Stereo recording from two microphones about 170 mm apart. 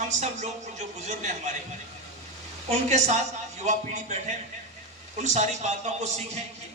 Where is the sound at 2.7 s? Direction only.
45° right (ahead or behind).